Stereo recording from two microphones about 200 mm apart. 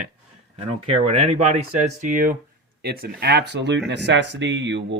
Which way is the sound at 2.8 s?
55° right (ahead or behind).